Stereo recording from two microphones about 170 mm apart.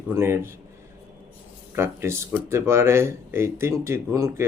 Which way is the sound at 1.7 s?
15° right (ahead or behind).